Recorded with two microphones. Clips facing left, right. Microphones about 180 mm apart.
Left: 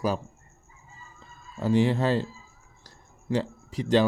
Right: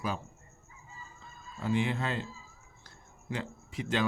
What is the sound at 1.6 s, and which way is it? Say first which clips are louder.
Speech: left 8 dB; 35° left (ahead or behind).